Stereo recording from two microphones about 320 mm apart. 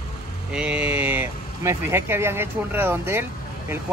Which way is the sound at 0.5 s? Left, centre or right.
Centre.